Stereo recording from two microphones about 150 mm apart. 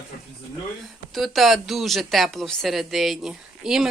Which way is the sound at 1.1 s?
Centre (ahead or behind).